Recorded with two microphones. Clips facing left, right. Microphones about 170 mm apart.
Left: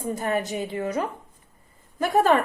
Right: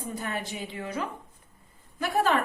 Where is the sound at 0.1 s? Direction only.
50° left (ahead or behind).